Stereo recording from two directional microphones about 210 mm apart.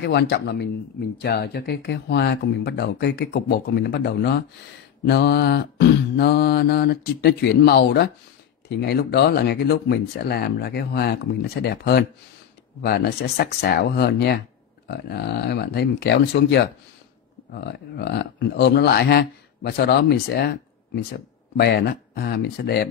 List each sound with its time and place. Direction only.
0.0 s speech: 50° left (ahead or behind)